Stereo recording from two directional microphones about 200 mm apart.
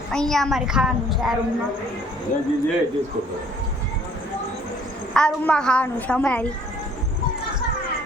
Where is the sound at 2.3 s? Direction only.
45° left (ahead or behind).